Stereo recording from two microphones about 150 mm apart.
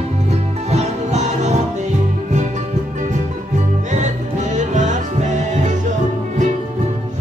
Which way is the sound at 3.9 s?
55° right (ahead or behind).